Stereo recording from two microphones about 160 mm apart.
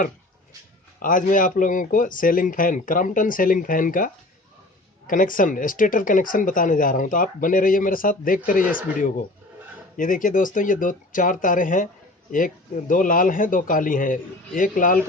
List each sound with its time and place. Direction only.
0.9 s speech: 55° left (ahead or behind)
12.9 s speech: 60° left (ahead or behind)